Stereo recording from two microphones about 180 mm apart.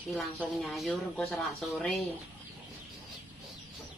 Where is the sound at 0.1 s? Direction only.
5° left (ahead or behind).